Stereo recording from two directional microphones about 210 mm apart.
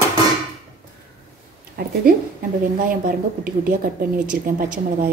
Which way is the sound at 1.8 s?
45° right (ahead or behind).